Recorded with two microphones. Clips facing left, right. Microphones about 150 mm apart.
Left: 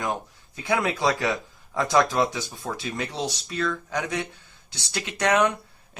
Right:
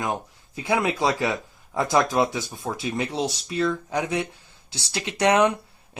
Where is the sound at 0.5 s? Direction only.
20° right (ahead or behind).